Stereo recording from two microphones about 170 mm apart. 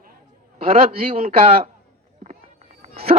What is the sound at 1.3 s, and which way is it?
Speech, 35° right (ahead or behind).